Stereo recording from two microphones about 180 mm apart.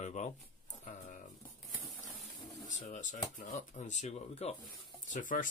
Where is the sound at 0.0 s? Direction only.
40° left (ahead or behind).